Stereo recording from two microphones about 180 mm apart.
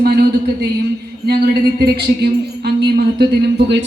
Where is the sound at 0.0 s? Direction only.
60° right (ahead or behind).